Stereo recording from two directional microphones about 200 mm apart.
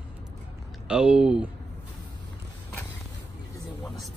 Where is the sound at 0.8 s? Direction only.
5° right (ahead or behind).